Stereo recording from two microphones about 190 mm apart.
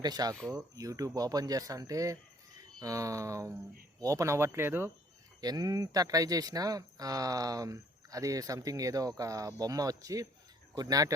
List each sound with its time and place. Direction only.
0.0 s speech: 20° right (ahead or behind)